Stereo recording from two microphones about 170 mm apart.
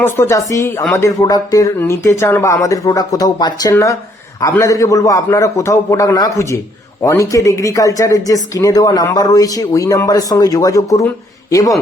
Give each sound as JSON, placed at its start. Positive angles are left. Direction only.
{"t": 0.0, "sound": "speech", "side_deg": 15}